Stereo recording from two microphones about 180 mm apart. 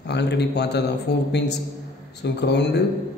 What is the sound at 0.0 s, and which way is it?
A man's voice, 70° left (ahead or behind).